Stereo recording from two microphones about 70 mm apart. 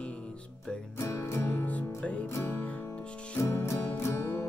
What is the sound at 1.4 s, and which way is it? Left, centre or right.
Music, left.